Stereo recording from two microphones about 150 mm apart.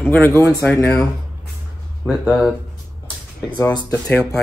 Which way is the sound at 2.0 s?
10° right (ahead or behind).